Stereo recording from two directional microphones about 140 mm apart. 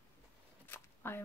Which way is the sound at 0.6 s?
15° left (ahead or behind).